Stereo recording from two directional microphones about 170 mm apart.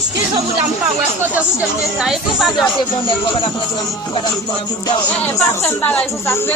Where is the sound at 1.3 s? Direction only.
5° right (ahead or behind).